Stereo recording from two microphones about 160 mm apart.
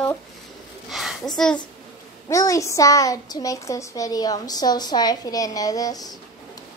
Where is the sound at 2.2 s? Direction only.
20° left (ahead or behind).